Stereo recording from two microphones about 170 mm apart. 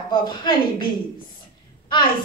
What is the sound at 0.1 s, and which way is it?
Speech, 25° left (ahead or behind).